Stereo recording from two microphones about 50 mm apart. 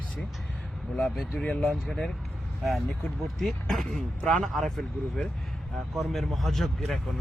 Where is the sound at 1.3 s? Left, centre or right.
Left.